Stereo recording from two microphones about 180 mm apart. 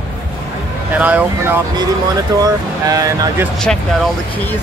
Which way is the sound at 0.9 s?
10° right (ahead or behind).